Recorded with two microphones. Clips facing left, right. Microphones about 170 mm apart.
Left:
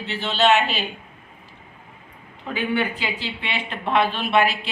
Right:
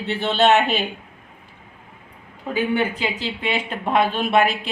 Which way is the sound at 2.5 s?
45° right (ahead or behind).